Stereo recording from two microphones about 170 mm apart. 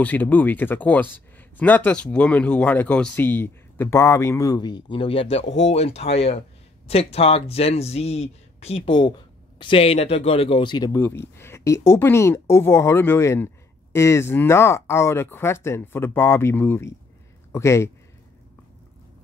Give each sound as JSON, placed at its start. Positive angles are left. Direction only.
{"t": 0.0, "sound": "speech", "side_deg": 10}